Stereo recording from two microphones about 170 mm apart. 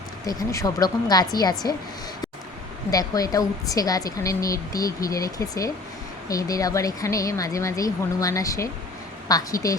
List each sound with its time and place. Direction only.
0.3 s a woman's voice: 20° left (ahead or behind)
2.9 s a woman's voice: 20° left (ahead or behind)